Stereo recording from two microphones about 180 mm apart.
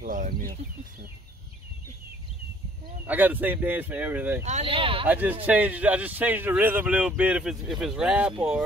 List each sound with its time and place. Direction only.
0.0 s speech: 50° right (ahead or behind)
3.1 s a man's voice: 10° right (ahead or behind)
4.5 s speech: 35° right (ahead or behind)
5.0 s a man's voice: 10° right (ahead or behind)